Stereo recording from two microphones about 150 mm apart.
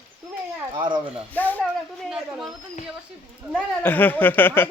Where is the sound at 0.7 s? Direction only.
30° right (ahead or behind).